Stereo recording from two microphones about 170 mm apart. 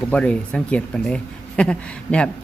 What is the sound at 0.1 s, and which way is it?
Speech, 5° left (ahead or behind).